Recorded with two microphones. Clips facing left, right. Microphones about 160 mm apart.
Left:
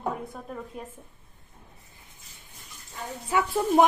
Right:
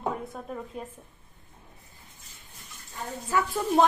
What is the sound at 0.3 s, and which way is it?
Speech, centre (ahead or behind).